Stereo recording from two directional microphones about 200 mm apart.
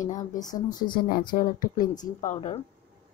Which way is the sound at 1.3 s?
45° left (ahead or behind).